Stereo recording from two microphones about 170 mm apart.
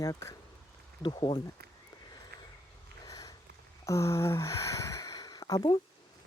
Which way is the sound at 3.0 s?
20° left (ahead or behind).